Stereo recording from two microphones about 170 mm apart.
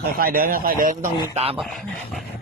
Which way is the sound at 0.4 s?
55° right (ahead or behind).